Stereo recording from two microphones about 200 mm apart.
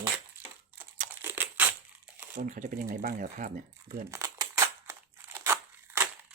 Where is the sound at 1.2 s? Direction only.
10° right (ahead or behind).